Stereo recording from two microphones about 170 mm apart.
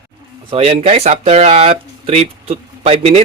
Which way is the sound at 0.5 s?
35° right (ahead or behind).